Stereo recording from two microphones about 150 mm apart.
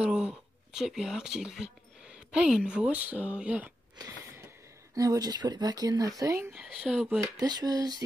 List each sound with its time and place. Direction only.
0.0 s speech: 5° right (ahead or behind)
4.9 s speech: 25° right (ahead or behind)
6.5 s speech: 5° right (ahead or behind)
7.3 s speech: 25° right (ahead or behind)